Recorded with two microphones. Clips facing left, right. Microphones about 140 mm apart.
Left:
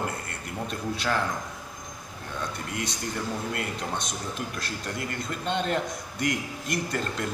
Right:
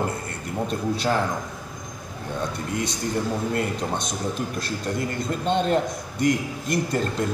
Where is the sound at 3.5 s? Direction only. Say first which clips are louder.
Right 6 dB; 40° right (ahead or behind).